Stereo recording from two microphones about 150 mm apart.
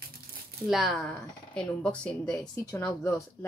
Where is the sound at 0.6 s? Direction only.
Centre (ahead or behind).